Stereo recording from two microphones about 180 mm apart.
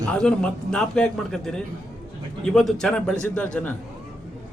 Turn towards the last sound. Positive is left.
turn(degrees=5)  # may be behind; listen again after turning